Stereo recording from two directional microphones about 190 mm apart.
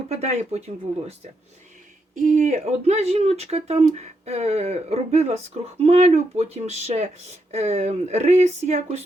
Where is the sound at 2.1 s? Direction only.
40° right (ahead or behind).